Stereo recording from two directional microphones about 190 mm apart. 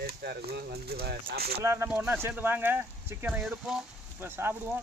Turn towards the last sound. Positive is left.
turn(degrees=-10)  # may be behind; listen again after turning